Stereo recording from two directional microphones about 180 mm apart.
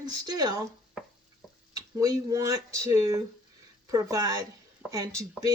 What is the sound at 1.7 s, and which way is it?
Speech, 20° right (ahead or behind).